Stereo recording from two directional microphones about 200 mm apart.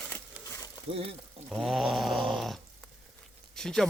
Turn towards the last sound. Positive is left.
turn(degrees=0)  # may be behind; listen again after turning